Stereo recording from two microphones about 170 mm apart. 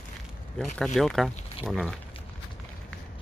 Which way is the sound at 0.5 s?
Centre (ahead or behind).